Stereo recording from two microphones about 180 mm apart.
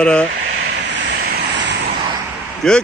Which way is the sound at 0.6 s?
65° right (ahead or behind).